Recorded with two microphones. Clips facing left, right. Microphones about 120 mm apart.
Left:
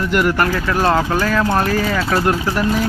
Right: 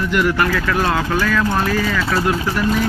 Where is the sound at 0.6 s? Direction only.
30° left (ahead or behind).